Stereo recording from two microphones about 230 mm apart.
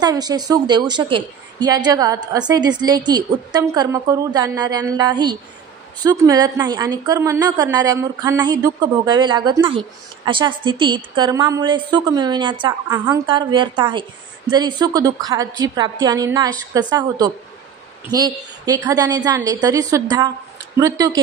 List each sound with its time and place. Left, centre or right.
0.0 s a woman's voice: centre